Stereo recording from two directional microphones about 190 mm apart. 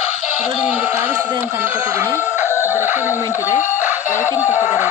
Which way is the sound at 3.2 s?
15° left (ahead or behind).